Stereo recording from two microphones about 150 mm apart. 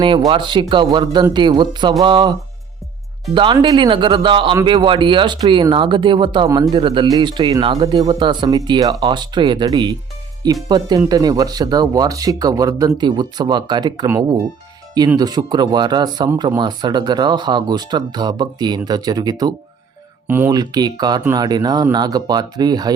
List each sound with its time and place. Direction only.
0.3 s speech: 30° right (ahead or behind)
3.3 s speech: 35° right (ahead or behind)
20.2 s speech: 15° right (ahead or behind)
20.5 s speech: 25° right (ahead or behind)